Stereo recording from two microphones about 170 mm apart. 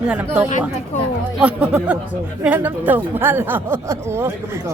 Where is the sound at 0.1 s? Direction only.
5° right (ahead or behind).